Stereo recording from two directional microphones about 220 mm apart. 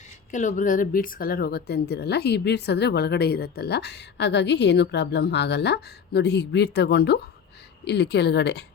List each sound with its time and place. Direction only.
0.3 s speech: 35° left (ahead or behind); by 8.6 s 50° left (ahead or behind)